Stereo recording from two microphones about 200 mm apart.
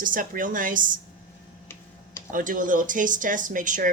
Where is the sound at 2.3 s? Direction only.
40° right (ahead or behind).